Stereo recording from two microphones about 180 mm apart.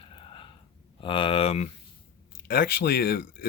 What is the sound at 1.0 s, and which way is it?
Speech, 30° left (ahead or behind).